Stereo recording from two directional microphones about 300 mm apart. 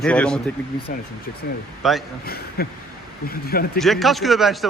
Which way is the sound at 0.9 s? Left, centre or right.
Left.